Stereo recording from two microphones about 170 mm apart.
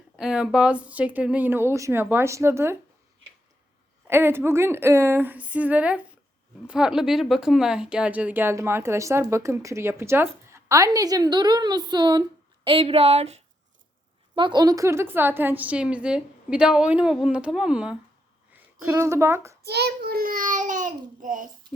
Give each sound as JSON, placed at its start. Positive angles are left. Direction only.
{"t": 0.2, "sound": "speech", "side_deg": -5}
{"t": 4.0, "sound": "speech", "side_deg": -15}
{"t": 14.3, "sound": "speech", "side_deg": -25}
{"t": 18.8, "sound": "speech", "side_deg": -15}
{"t": 19.6, "sound": "a child's voice", "side_deg": -70}